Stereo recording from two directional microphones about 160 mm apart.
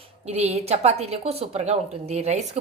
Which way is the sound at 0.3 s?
40° right (ahead or behind).